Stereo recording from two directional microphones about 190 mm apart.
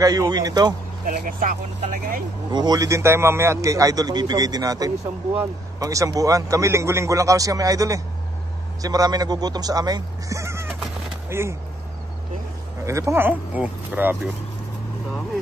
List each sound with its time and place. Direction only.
0.0 s speech: 20° right (ahead or behind)
1.0 s speech: 45° right (ahead or behind)
2.5 s a man's voice: 20° right (ahead or behind)
12.8 s a man's voice: 15° right (ahead or behind)